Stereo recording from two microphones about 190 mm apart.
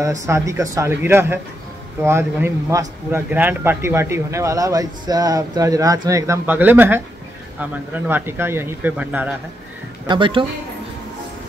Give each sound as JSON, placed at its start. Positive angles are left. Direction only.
{"t": 0.0, "sound": "speech", "side_deg": -15}
{"t": 8.1, "sound": "speech", "side_deg": -10}
{"t": 10.0, "sound": "speech", "side_deg": -25}